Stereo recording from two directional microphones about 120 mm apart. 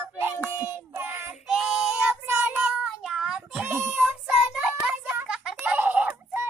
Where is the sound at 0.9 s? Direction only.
20° right (ahead or behind).